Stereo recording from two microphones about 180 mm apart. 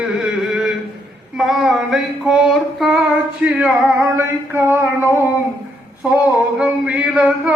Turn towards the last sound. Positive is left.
turn(degrees=-5)  # may be behind; listen again after turning